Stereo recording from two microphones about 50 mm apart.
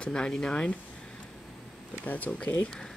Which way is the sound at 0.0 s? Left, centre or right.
Centre.